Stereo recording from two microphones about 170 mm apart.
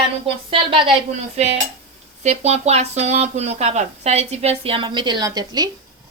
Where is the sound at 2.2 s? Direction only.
40° right (ahead or behind); by 5.7 s 20° right (ahead or behind).